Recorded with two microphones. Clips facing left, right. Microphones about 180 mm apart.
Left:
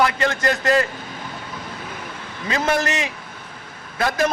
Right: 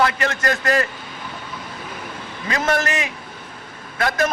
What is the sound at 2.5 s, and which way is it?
Speech, 30° left (ahead or behind).